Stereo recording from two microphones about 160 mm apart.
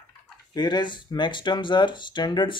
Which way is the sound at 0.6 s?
25° left (ahead or behind).